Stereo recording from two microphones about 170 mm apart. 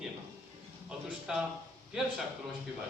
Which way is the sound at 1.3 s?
5° right (ahead or behind).